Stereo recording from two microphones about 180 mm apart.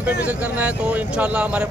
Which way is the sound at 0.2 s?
10° right (ahead or behind).